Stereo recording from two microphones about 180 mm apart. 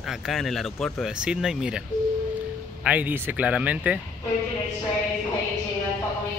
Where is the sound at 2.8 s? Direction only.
10° right (ahead or behind).